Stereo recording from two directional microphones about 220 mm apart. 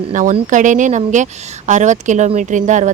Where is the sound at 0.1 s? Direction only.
35° right (ahead or behind).